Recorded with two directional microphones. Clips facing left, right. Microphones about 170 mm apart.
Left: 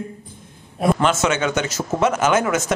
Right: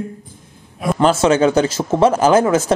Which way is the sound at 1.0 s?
30° right (ahead or behind).